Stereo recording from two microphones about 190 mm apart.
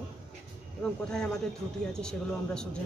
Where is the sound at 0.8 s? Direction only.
5° left (ahead or behind).